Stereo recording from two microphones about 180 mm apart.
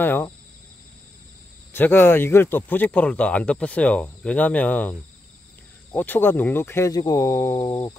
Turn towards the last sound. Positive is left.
turn(degrees=25)  # may be behind; listen again after turning